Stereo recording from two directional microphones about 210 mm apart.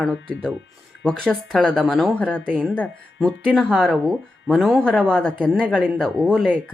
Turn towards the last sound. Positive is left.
turn(degrees=0)  # may be behind; listen again after turning